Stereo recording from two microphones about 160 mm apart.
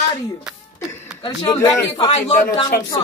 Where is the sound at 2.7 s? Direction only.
75° left (ahead or behind).